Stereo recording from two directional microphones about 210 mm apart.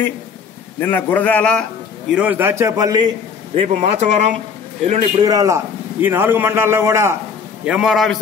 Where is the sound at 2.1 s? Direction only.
10° right (ahead or behind).